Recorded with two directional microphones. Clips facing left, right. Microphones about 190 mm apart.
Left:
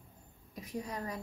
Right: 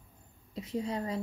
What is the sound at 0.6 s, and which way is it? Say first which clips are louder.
Speech: right 6 dB; 25° right (ahead or behind).